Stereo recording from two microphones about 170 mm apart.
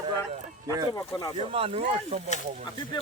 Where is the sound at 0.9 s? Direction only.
20° left (ahead or behind).